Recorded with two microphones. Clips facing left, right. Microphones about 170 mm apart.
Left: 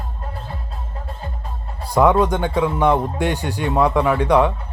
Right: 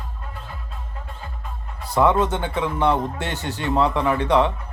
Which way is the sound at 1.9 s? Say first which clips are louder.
Left 3 dB; 15° left (ahead or behind).